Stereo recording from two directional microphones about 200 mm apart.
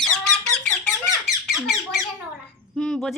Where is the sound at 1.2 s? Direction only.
Centre (ahead or behind).